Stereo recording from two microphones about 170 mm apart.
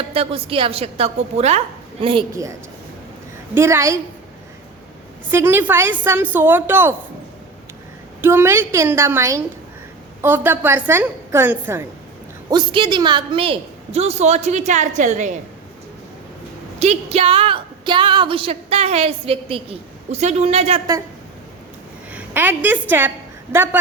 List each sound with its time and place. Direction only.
0.0 s a woman's voice: 35° right (ahead or behind)
2.3 s a woman's voice: 20° right (ahead or behind)
5.3 s a woman's voice: 15° right (ahead or behind)
8.2 s a woman's voice: 15° right (ahead or behind)
12.5 s a woman's voice: 30° right (ahead or behind); by 15.3 s 45° right (ahead or behind)
16.8 s a woman's voice: 40° right (ahead or behind)
22.1 s a woman's voice: 10° right (ahead or behind)